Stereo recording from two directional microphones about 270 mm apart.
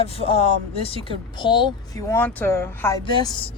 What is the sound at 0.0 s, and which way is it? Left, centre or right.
Speech, left.